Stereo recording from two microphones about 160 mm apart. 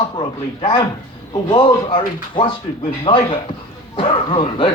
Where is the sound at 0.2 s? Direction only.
30° left (ahead or behind).